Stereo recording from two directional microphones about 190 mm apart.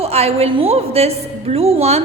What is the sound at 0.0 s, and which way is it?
A woman's voice, 35° right (ahead or behind).